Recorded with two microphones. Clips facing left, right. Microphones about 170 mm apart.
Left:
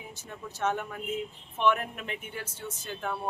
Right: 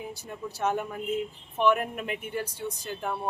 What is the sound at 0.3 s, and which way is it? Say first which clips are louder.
A woman's voice: right 1 dB; 10° right (ahead or behind).